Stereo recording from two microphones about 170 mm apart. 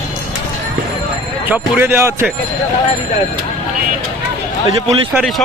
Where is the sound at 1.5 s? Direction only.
10° right (ahead or behind).